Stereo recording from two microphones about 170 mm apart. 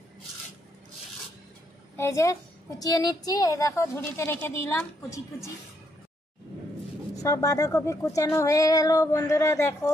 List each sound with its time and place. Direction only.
2.0 s a woman's voice: 15° left (ahead or behind)
7.2 s speech: 20° left (ahead or behind)